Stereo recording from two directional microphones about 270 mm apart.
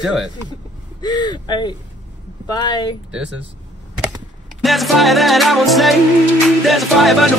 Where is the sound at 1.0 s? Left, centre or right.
Centre.